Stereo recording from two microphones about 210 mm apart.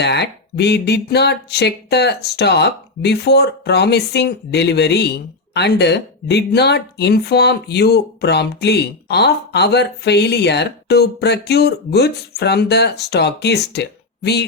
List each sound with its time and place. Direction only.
0.0 s speech: 55° left (ahead or behind)